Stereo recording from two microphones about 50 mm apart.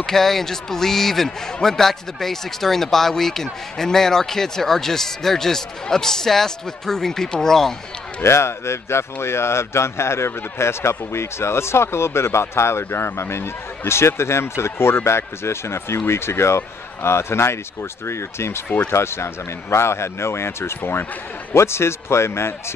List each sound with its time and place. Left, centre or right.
0.0 s a man's voice: centre
8.2 s speech: left
21.5 s speech: left